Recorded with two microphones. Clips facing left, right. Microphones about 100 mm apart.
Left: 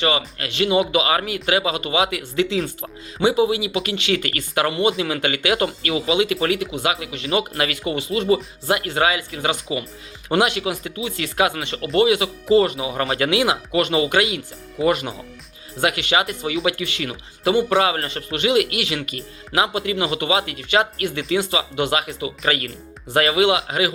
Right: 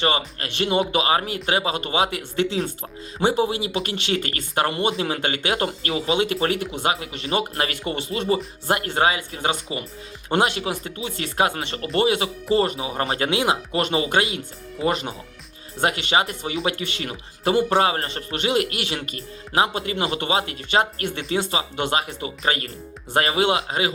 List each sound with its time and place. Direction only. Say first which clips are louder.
0.0 s speech: left 1 dB; 40° right (ahead or behind)